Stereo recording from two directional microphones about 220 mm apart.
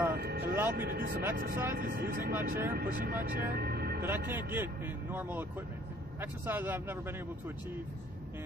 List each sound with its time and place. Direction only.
0.1 s music: 45° right (ahead or behind)
0.7 s speech: 45° right (ahead or behind)
1.2 s speech: 10° right (ahead or behind)
1.8 s speech: 40° right (ahead or behind)
2.3 s speech: 10° right (ahead or behind)
2.7 s speech: 40° right (ahead or behind)
4.0 s speech: 10° right (ahead or behind)